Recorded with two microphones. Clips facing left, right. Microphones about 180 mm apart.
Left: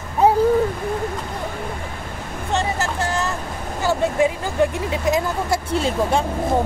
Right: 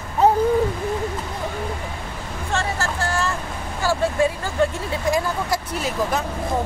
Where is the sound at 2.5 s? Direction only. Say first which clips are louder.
Left 2 dB; 20° left (ahead or behind).